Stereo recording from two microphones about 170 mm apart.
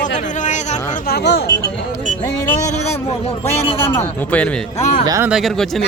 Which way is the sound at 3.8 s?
15° left (ahead or behind).